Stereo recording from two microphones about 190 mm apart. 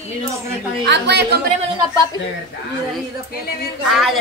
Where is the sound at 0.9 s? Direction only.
65° right (ahead or behind).